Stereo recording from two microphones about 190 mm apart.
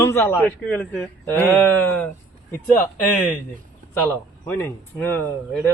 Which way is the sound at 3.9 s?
10° left (ahead or behind).